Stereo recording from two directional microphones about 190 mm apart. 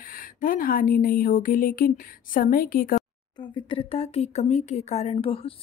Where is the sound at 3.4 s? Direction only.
25° left (ahead or behind).